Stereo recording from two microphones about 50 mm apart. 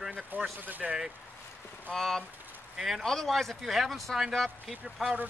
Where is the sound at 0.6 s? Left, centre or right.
Right.